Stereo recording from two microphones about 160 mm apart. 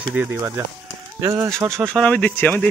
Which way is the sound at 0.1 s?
10° right (ahead or behind).